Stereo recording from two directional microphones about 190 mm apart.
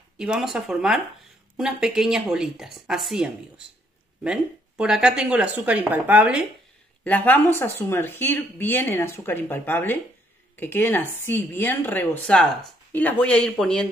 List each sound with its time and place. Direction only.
0.2 s speech: 5° right (ahead or behind)
7.1 s speech: 10° left (ahead or behind)